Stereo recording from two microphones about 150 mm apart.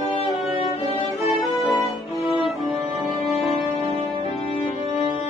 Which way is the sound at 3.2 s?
Centre (ahead or behind).